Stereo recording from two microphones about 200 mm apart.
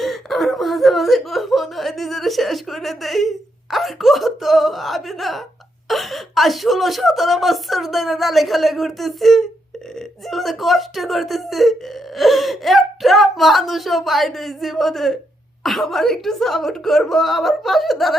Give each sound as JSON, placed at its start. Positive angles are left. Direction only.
{"t": 0.0, "sound": "speech", "side_deg": 0}